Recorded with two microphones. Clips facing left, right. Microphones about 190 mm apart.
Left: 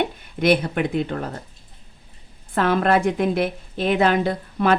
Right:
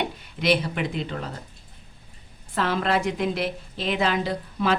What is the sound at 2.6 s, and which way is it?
A woman's voice, 55° left (ahead or behind).